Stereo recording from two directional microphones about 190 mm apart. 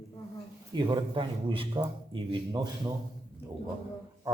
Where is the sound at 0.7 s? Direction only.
20° right (ahead or behind).